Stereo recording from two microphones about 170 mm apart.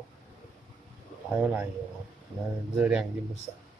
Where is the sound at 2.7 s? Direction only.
5° right (ahead or behind).